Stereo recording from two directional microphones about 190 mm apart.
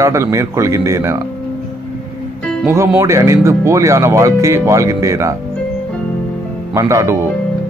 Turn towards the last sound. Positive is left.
turn(degrees=-15)  # may be behind; listen again after turning